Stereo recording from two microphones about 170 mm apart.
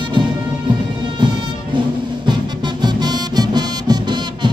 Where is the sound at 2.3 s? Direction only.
25° right (ahead or behind).